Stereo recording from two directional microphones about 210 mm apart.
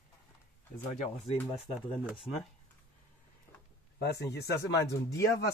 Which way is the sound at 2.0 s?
5° right (ahead or behind).